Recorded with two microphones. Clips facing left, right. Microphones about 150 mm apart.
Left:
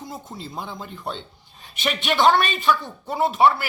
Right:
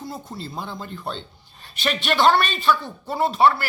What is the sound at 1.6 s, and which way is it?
A man's voice, 15° left (ahead or behind).